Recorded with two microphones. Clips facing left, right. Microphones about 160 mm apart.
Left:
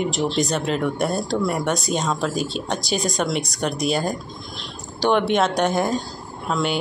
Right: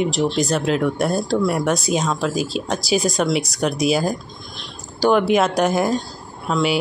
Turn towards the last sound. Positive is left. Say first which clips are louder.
# right 3 dB
turn(degrees=0)  # may be behind; listen again after turning